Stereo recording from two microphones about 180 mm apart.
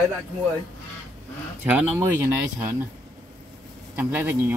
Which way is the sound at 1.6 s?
15° right (ahead or behind).